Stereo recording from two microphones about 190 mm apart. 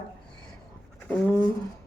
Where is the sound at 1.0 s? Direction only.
5° left (ahead or behind).